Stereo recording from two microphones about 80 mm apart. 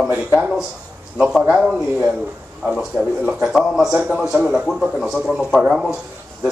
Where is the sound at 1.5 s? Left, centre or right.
Centre.